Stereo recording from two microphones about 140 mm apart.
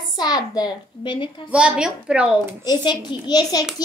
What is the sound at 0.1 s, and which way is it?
A child's voice, 30° left (ahead or behind).